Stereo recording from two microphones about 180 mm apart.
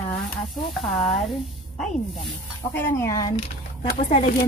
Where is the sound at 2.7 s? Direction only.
10° left (ahead or behind).